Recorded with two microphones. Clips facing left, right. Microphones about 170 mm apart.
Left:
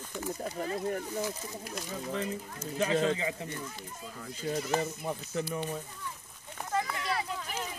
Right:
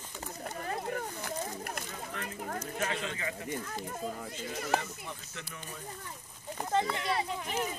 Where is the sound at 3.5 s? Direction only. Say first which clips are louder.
Right 4 dB; 60° right (ahead or behind).